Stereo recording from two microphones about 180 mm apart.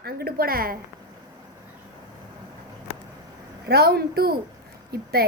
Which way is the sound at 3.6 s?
60° right (ahead or behind).